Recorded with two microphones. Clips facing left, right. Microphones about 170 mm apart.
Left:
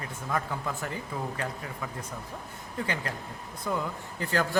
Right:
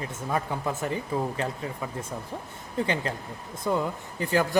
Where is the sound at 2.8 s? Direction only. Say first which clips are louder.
Right 5 dB; 25° right (ahead or behind).